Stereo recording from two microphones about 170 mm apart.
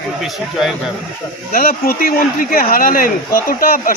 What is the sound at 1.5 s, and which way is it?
Speech, 55° left (ahead or behind).